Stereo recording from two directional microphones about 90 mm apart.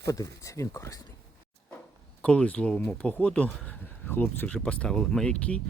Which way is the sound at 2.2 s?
10° left (ahead or behind).